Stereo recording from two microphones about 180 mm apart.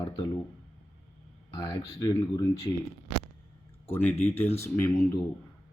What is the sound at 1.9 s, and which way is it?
Speech, 20° left (ahead or behind).